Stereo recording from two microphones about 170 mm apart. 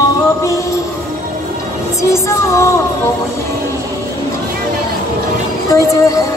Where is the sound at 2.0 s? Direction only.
15° left (ahead or behind).